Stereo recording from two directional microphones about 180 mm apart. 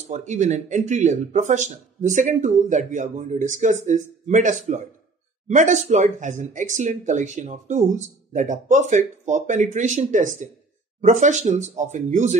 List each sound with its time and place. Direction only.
0.1 s speech: 40° right (ahead or behind)